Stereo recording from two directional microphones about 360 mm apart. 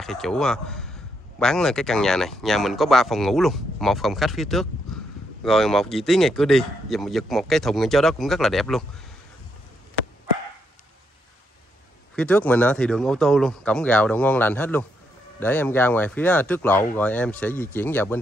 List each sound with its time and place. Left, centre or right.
0.0 s a man's voice: centre
12.2 s speech: centre